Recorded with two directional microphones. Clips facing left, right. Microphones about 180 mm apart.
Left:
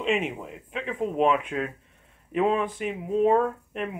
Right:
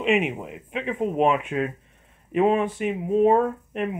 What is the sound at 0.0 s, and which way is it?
Speech, 20° right (ahead or behind).